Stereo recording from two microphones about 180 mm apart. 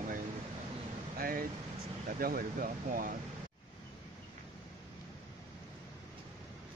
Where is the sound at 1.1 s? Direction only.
55° right (ahead or behind).